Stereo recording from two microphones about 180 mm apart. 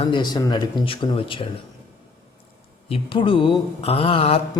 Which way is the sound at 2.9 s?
30° left (ahead or behind).